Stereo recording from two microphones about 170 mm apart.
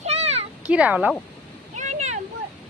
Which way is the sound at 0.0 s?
40° right (ahead or behind).